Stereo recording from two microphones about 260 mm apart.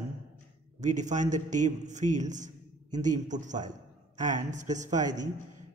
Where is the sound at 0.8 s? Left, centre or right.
Right.